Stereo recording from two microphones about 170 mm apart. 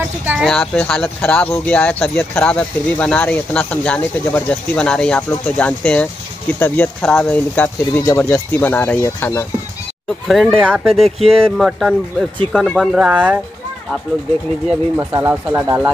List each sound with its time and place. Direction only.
0.2 s speech: 10° right (ahead or behind)
0.5 s speech: 5° left (ahead or behind)
10.2 s speech: centre (ahead or behind)
11.1 s speech: 35° right (ahead or behind)
11.5 s speech: centre (ahead or behind)
15.0 s speech: 15° right (ahead or behind)